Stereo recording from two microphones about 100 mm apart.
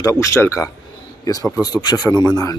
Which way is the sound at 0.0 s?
30° left (ahead or behind).